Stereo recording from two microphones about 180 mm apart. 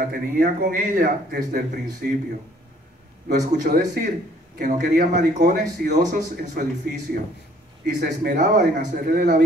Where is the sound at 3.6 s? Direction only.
55° right (ahead or behind).